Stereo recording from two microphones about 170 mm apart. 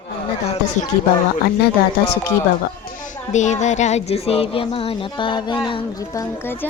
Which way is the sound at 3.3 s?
45° left (ahead or behind).